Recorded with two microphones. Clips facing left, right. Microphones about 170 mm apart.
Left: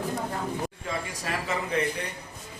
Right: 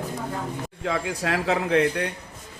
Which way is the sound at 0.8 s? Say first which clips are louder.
Right 7 dB; 85° right.